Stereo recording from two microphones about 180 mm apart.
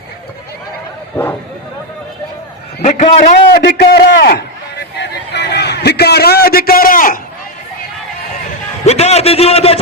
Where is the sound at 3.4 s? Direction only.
60° left (ahead or behind).